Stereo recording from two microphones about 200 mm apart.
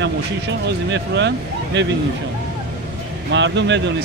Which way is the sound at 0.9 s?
60° right (ahead or behind).